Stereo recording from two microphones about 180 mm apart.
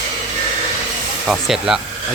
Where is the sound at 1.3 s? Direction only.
Centre (ahead or behind).